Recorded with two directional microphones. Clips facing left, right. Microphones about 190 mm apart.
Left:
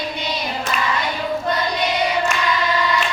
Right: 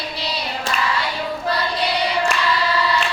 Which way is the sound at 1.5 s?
35° right (ahead or behind).